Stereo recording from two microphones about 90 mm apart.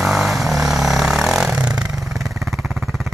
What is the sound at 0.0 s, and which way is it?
Vehicle, centre (ahead or behind).